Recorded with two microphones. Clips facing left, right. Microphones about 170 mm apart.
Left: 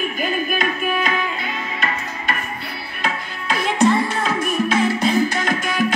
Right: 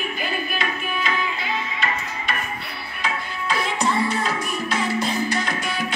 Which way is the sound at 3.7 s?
55° left (ahead or behind).